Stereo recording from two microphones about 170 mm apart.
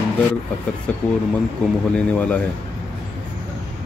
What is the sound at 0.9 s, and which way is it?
Speech, 10° left (ahead or behind).